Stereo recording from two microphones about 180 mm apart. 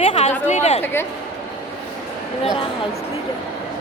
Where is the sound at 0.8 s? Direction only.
15° left (ahead or behind).